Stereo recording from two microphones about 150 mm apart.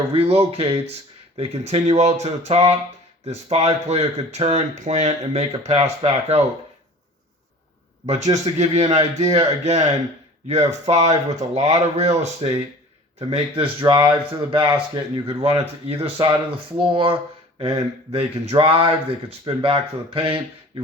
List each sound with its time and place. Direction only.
0.1 s speech: 40° right (ahead or behind)
8.0 s speech: 50° right (ahead or behind)